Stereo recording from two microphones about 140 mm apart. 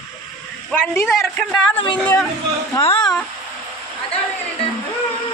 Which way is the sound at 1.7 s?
35° left (ahead or behind).